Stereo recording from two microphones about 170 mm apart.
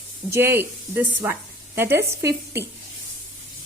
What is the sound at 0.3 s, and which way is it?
Speech, 15° right (ahead or behind).